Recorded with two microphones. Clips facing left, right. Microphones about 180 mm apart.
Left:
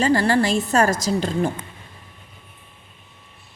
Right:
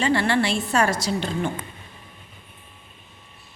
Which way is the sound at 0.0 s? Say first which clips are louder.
Left 3 dB; 40° left (ahead or behind).